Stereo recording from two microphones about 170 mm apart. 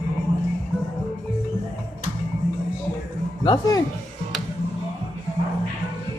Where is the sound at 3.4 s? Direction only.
20° left (ahead or behind).